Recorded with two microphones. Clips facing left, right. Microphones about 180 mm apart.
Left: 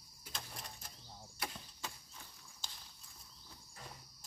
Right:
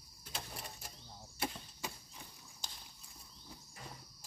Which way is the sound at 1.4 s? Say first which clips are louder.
Right 5 dB; 25° right (ahead or behind).